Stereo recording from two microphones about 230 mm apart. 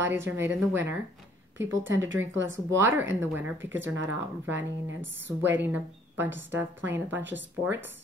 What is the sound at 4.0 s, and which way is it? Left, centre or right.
Speech, right.